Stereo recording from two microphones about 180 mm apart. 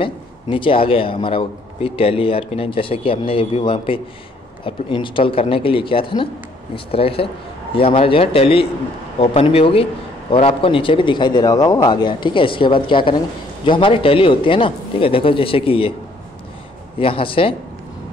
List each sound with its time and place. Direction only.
0.0 s a man's voice: 30° left (ahead or behind)
17.0 s a man's voice: 30° left (ahead or behind)